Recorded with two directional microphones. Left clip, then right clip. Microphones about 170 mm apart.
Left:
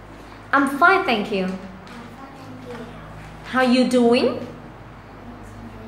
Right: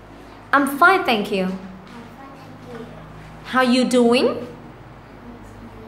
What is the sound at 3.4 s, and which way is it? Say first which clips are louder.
Speech: right 1 dB; 25° right (ahead or behind).